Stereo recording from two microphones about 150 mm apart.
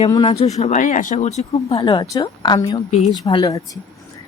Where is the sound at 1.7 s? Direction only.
30° left (ahead or behind).